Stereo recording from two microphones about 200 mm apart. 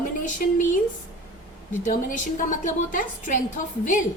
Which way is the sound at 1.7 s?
40° left (ahead or behind).